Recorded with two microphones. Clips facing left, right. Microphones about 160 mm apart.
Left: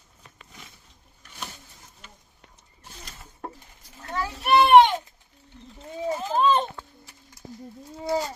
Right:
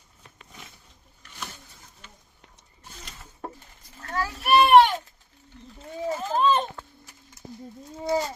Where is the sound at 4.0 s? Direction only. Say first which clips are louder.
Right 1 dB; 20° left (ahead or behind).